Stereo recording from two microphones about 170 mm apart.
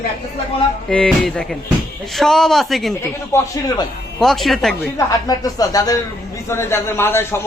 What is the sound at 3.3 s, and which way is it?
Speech, 20° left (ahead or behind).